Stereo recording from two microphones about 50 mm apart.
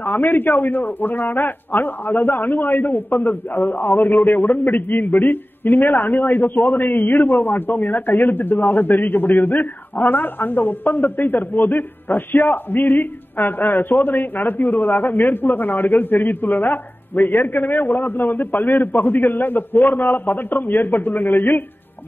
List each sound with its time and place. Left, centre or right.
0.0 s a man's voice: left